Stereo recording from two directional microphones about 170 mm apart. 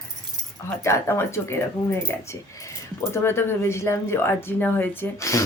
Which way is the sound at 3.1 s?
15° left (ahead or behind).